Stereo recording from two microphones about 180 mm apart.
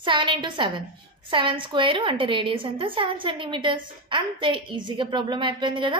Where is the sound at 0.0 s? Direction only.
25° right (ahead or behind).